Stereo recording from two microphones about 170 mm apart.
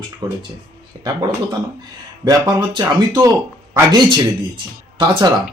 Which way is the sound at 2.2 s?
20° right (ahead or behind).